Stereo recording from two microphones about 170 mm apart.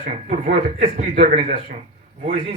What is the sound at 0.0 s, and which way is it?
Speech, 55° right (ahead or behind).